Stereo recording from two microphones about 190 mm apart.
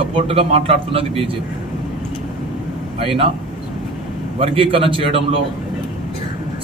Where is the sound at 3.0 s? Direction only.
30° right (ahead or behind).